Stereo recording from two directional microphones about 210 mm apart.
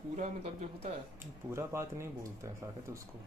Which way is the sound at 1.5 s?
15° right (ahead or behind).